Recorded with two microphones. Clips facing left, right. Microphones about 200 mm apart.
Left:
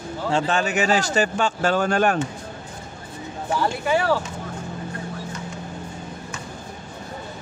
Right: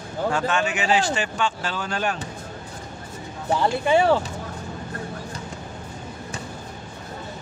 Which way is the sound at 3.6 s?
20° right (ahead or behind).